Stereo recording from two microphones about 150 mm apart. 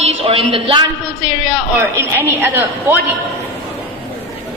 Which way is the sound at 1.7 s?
15° right (ahead or behind).